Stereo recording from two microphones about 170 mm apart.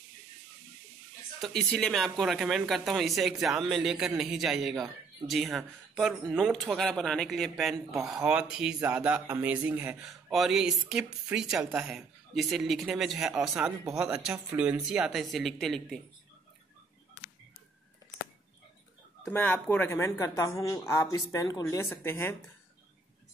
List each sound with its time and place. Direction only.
1.4 s speech: centre (ahead or behind)
19.2 s speech: 5° left (ahead or behind)